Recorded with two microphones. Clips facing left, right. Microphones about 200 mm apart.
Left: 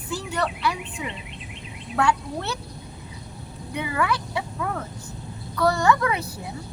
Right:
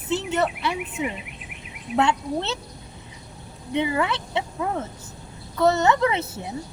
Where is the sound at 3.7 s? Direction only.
25° right (ahead or behind).